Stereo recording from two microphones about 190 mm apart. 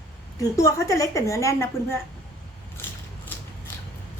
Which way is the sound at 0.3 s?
15° left (ahead or behind).